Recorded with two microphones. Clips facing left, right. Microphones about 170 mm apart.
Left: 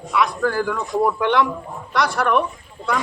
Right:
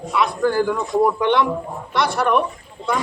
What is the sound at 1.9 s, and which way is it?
Speech, 25° right (ahead or behind).